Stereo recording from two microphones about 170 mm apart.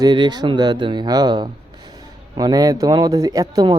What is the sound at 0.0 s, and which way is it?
Speech, 25° right (ahead or behind).